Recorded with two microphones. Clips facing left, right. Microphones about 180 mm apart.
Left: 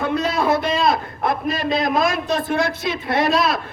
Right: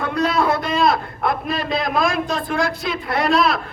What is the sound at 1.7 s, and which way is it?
A man's voice, 20° left (ahead or behind).